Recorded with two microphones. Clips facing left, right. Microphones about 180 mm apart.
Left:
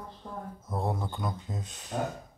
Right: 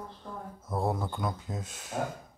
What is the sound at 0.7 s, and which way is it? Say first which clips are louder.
Speech: right 2 dB; 5° right (ahead or behind).